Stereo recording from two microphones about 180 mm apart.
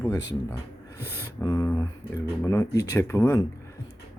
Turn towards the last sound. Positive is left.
turn(degrees=15)  # may be behind; listen again after turning